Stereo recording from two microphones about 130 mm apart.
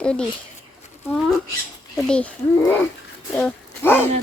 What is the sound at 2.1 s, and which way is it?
A child's voice, 10° left (ahead or behind).